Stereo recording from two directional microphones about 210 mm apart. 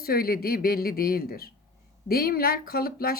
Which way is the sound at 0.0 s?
45° left (ahead or behind).